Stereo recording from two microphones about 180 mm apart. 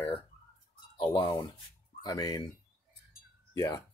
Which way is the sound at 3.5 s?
20° left (ahead or behind).